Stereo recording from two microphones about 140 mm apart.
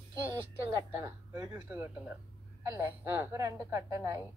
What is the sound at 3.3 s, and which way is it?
Speech, 20° right (ahead or behind).